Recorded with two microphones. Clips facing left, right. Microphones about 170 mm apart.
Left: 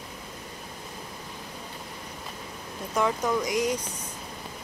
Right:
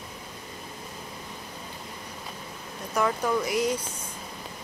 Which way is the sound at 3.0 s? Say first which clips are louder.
Even; 10° left (ahead or behind).